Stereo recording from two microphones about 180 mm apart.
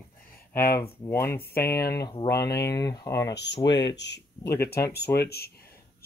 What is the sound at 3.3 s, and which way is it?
Speech, 70° left (ahead or behind).